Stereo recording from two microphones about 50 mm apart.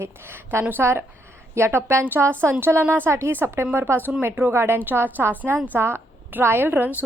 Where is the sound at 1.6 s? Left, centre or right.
Right.